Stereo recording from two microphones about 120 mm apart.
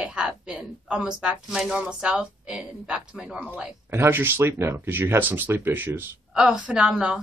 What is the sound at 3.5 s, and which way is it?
Speech, 20° right (ahead or behind).